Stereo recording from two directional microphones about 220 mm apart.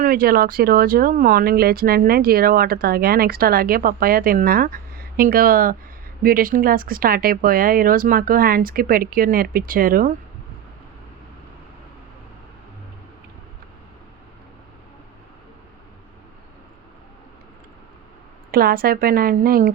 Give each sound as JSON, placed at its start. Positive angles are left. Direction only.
{"t": 0.0, "sound": "speech", "side_deg": -40}
{"t": 18.5, "sound": "speech", "side_deg": -40}